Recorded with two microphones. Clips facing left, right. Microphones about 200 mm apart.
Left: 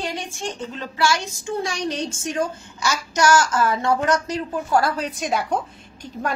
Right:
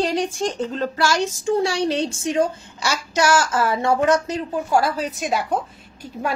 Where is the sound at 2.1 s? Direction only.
30° right (ahead or behind).